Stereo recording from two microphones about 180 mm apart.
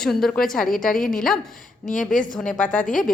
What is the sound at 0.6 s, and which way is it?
Speech, 50° left (ahead or behind).